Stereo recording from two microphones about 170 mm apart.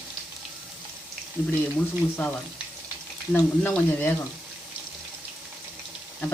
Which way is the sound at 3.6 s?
15° left (ahead or behind).